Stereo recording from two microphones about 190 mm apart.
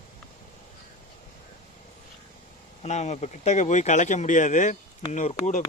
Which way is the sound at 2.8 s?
35° left (ahead or behind).